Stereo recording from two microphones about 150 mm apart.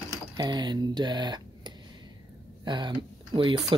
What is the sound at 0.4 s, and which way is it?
Speech, 30° right (ahead or behind).